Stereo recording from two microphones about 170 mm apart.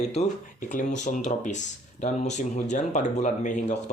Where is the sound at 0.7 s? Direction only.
50° left (ahead or behind).